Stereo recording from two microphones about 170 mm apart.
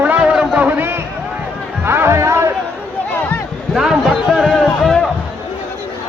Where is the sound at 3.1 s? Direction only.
10° left (ahead or behind).